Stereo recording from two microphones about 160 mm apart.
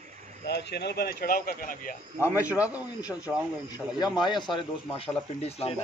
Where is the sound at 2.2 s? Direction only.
15° left (ahead or behind).